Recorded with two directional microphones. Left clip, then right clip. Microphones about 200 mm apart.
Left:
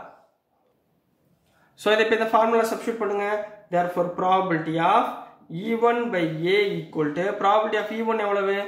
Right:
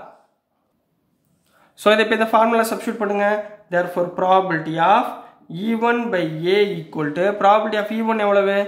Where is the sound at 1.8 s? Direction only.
40° right (ahead or behind).